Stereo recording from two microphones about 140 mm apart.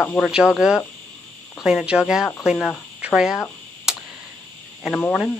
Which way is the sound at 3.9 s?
5° right (ahead or behind).